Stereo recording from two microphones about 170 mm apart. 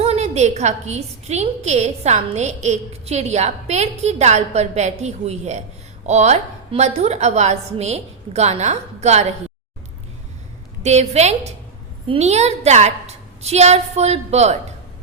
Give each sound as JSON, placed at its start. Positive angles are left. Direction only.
{"t": 0.0, "sound": "a woman's voice", "side_deg": -40}
{"t": 10.8, "sound": "a woman's voice", "side_deg": -40}